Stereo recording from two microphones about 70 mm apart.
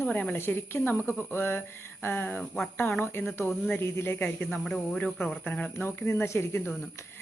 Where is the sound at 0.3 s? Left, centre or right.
Left.